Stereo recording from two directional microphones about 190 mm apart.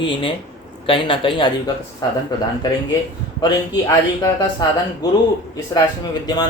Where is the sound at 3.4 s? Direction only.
20° left (ahead or behind).